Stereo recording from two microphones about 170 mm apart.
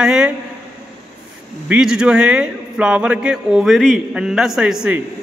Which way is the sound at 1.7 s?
5° right (ahead or behind).